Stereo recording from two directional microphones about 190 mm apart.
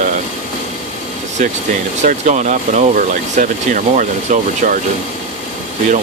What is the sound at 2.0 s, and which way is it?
Speech, 40° right (ahead or behind).